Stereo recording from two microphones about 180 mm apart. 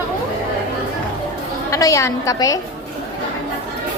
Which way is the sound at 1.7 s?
15° left (ahead or behind).